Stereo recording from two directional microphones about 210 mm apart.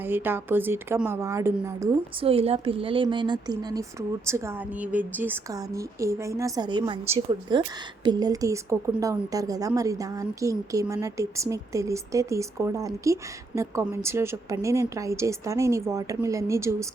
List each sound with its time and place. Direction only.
0.0 s a woman's voice: 10° right (ahead or behind)
2.2 s a woman's voice: 30° right (ahead or behind)